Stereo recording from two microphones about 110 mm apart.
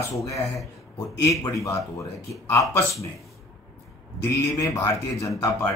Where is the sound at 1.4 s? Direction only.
30° left (ahead or behind).